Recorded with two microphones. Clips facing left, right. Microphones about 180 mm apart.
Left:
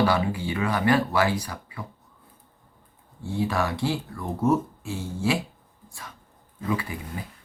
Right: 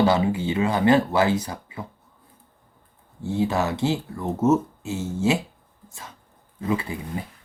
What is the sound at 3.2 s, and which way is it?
Speech, 25° right (ahead or behind).